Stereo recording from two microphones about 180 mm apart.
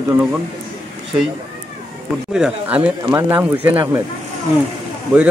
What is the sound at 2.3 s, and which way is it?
A man's voice, 5° right (ahead or behind).